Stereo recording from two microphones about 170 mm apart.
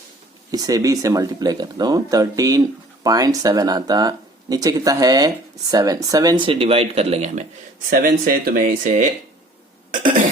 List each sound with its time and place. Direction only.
0.5 s speech: 20° right (ahead or behind); by 7.4 s 40° right (ahead or behind)
7.9 s speech: 55° right (ahead or behind)
9.9 s cough: 50° right (ahead or behind)